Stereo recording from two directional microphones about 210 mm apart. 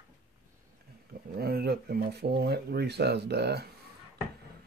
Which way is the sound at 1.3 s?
45° right (ahead or behind).